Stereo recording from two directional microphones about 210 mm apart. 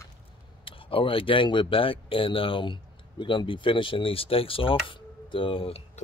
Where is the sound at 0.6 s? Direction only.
25° left (ahead or behind).